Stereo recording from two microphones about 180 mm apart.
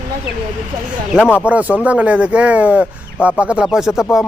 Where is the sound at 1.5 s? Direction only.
10° right (ahead or behind).